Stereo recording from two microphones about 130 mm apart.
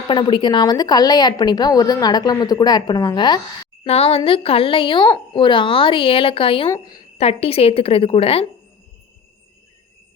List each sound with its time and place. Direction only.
0.1 s speech: 40° left (ahead or behind)
3.8 s a woman's voice: 50° left (ahead or behind)
6.7 s a woman's voice: 25° left (ahead or behind)
7.2 s a woman's voice: 50° left (ahead or behind)